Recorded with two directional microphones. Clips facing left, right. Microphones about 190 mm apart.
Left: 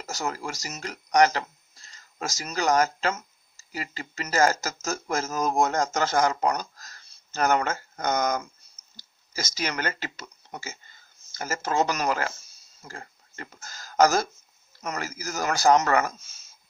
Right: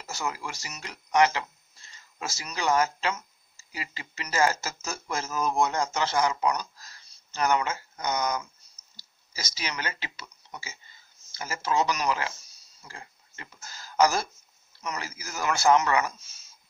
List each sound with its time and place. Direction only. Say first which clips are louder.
0.0 s speech: left 2 dB; 40° left (ahead or behind)